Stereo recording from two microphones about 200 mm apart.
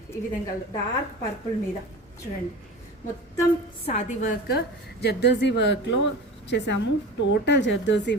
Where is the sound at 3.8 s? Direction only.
35° left (ahead or behind).